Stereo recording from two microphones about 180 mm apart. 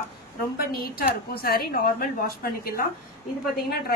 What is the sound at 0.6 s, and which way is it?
Speech, 55° left (ahead or behind).